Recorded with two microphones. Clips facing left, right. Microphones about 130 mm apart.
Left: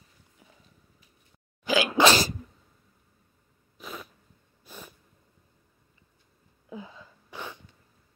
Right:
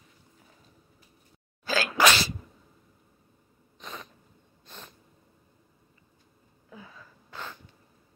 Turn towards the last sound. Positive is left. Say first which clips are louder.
# left 1 dB
turn(degrees=15)  # may be behind; listen again after turning